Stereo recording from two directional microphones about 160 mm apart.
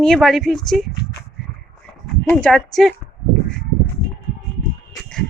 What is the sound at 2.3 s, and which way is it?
Speech, 5° left (ahead or behind).